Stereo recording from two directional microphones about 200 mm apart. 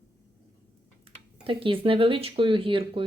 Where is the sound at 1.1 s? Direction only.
30° right (ahead or behind).